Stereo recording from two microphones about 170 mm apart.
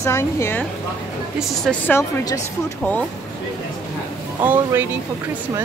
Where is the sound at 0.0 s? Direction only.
15° left (ahead or behind).